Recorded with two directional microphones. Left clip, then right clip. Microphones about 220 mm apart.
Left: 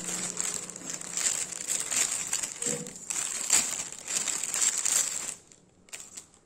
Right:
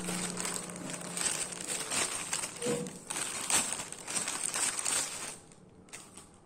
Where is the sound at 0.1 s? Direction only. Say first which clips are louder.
Left 3 dB; 10° left (ahead or behind).